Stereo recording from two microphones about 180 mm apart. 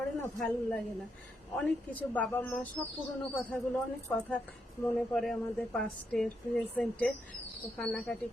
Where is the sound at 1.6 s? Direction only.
5° left (ahead or behind).